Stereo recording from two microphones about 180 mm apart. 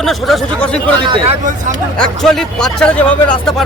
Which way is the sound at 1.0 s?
25° right (ahead or behind).